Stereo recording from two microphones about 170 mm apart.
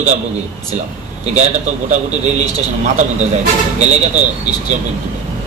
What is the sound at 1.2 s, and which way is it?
A man's voice, 45° right (ahead or behind).